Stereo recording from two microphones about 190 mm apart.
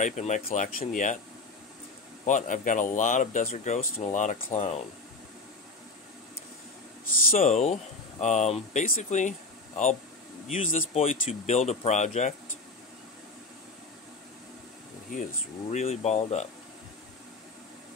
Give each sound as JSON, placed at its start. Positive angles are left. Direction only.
{"t": 0.0, "sound": "speech", "side_deg": 40}
{"t": 2.2, "sound": "speech", "side_deg": 40}
{"t": 7.2, "sound": "speech", "side_deg": 40}
{"t": 10.5, "sound": "speech", "side_deg": 45}
{"t": 15.7, "sound": "speech", "side_deg": 35}